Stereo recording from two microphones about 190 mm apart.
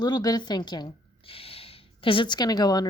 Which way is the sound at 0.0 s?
20° left (ahead or behind).